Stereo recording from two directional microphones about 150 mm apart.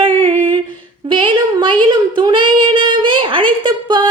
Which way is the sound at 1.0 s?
35° right (ahead or behind).